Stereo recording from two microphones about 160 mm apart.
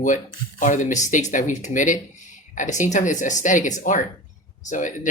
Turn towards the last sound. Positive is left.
turn(degrees=50)  # may be behind; listen again after turning